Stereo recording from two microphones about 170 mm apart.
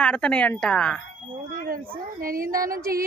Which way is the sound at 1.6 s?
60° right (ahead or behind).